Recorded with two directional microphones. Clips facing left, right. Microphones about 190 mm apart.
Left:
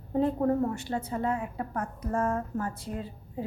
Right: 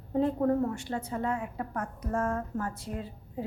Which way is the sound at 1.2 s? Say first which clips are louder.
Left 2 dB; 35° left (ahead or behind).